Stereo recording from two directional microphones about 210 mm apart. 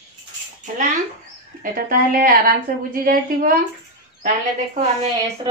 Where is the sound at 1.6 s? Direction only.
40° right (ahead or behind).